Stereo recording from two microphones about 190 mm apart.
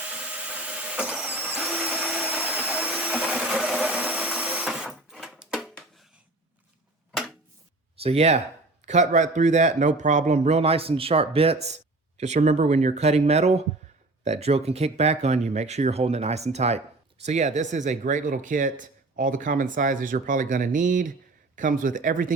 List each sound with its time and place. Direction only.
0.4 s vehicle: 5° right (ahead or behind)
1.8 s vacuum cleaner: 10° left (ahead or behind)
2.6 s a sound: 10° right (ahead or behind)
8.0 s speech: 30° right (ahead or behind)